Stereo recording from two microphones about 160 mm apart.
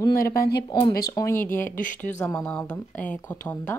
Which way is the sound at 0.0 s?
20° left (ahead or behind).